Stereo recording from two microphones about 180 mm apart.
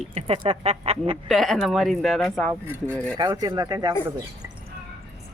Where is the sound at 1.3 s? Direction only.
Centre (ahead or behind).